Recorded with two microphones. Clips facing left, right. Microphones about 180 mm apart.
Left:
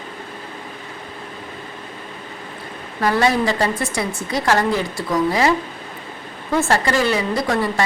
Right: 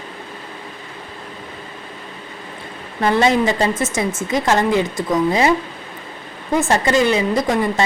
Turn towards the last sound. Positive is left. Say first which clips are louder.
# right 2 dB
turn(degrees=-20)  # may be behind; listen again after turning